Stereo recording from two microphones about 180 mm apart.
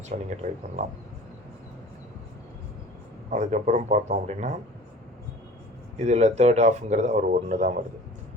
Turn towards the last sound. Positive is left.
turn(degrees=-45)  # may be behind; listen again after turning